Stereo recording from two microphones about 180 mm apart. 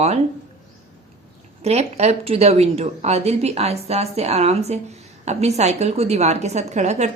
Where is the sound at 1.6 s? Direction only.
35° right (ahead or behind).